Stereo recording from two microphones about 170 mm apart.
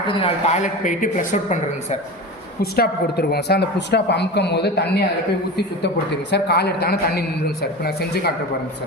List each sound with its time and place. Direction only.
0.1 s speech: 35° left (ahead or behind)
2.6 s a man's voice: 65° left (ahead or behind)